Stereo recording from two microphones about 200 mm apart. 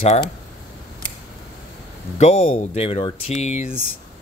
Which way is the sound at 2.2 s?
35° left (ahead or behind).